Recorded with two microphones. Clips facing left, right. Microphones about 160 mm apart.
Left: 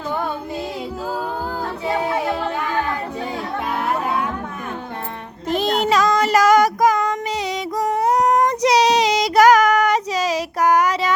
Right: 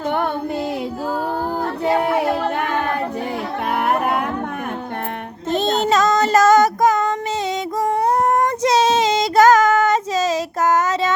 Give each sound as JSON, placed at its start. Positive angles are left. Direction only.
{"t": 1.8, "sound": "a sound", "side_deg": -60}
{"t": 2.6, "sound": "a capella", "side_deg": -60}
{"t": 3.8, "sound": "music", "side_deg": -60}
{"t": 5.5, "sound": "child singing", "side_deg": -25}
{"t": 8.6, "sound": "child singing", "side_deg": -25}